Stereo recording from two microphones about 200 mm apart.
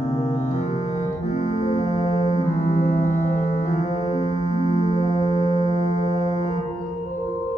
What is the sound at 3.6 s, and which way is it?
Music, 35° left (ahead or behind).